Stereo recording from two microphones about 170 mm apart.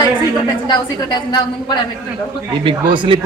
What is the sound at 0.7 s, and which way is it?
A woman's voice, 25° left (ahead or behind).